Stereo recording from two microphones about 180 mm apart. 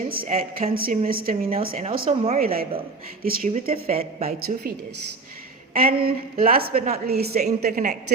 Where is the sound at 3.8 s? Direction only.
35° right (ahead or behind).